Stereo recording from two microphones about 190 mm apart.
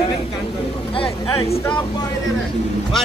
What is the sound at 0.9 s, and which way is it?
Speech, 30° left (ahead or behind).